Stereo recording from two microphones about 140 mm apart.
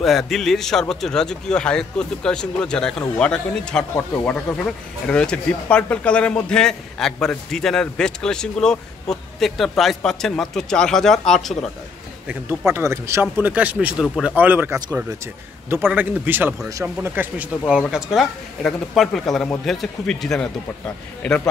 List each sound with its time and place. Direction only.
0.0 s speech: centre (ahead or behind)
12.3 s speech: 15° right (ahead or behind)
14.0 s speech: centre (ahead or behind)
14.3 s speech: 15° right (ahead or behind); by 21.4 s 5° left (ahead or behind)